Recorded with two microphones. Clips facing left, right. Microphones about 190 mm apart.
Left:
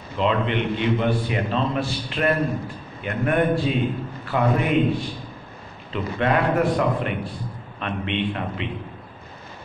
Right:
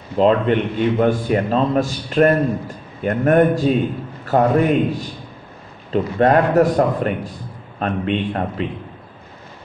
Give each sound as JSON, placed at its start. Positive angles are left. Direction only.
{"t": 0.2, "sound": "a man's voice", "side_deg": -45}